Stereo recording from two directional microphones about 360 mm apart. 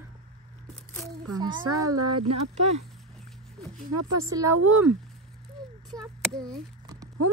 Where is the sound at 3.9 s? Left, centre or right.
Right.